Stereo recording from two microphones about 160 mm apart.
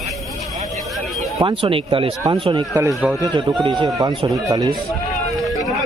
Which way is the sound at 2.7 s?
20° right (ahead or behind).